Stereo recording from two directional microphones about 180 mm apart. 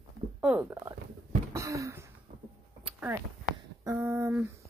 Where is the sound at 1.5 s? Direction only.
15° right (ahead or behind).